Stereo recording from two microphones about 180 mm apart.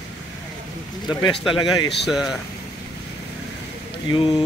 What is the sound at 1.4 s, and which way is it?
Speech, 25° left (ahead or behind).